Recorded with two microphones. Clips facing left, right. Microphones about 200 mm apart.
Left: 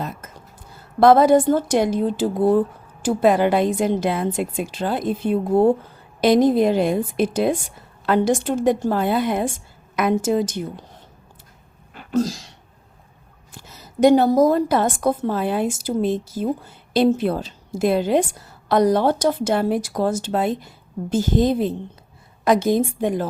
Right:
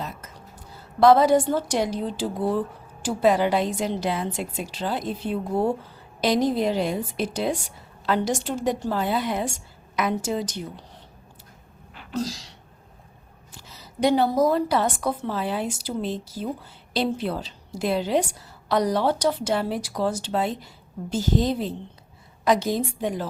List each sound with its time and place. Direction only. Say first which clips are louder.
0.9 s a woman's voice: left 3 dB; 50° left (ahead or behind)
11.9 s a sound: left 8 dB; 50° left (ahead or behind)
13.5 s a woman's voice: left 4 dB; 50° left (ahead or behind)